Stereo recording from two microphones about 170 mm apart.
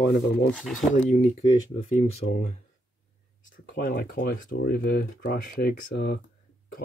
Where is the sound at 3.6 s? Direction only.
55° left (ahead or behind).